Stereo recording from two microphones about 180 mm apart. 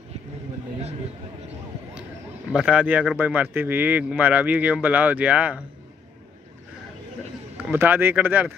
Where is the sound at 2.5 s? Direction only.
5° right (ahead or behind).